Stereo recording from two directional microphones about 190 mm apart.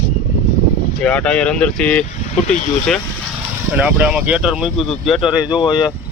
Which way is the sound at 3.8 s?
10° right (ahead or behind).